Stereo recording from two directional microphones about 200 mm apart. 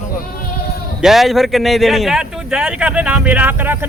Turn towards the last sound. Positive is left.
turn(degrees=-10)  # may be behind; listen again after turning